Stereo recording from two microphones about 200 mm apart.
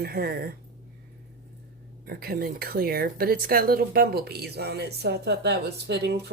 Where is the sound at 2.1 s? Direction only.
50° right (ahead or behind).